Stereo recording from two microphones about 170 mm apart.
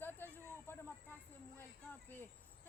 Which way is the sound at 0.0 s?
10° left (ahead or behind).